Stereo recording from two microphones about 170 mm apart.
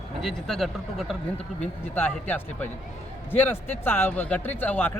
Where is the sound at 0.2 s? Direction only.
Centre (ahead or behind).